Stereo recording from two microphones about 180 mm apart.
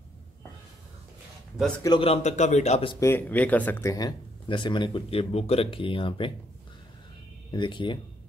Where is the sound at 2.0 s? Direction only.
40° left (ahead or behind).